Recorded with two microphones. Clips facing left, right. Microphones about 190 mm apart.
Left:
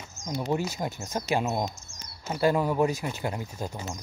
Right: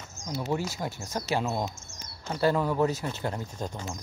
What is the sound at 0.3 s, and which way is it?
Speech, 15° left (ahead or behind).